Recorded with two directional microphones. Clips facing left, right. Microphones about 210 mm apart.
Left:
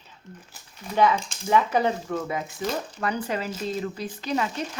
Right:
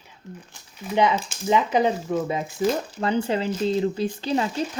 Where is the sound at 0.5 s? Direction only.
5° left (ahead or behind).